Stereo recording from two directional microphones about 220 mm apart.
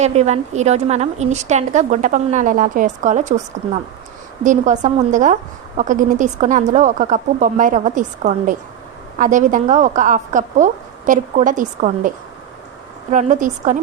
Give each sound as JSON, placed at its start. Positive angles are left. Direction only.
{"t": 0.0, "sound": "a woman's voice", "side_deg": -30}
{"t": 4.4, "sound": "a woman's voice", "side_deg": -35}